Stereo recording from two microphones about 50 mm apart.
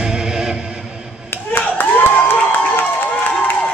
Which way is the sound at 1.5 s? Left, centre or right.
Left.